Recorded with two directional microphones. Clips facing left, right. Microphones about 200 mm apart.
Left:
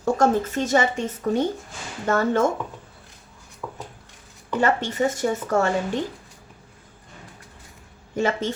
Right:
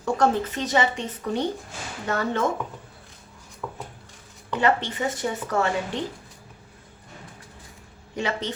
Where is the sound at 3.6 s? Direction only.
5° left (ahead or behind).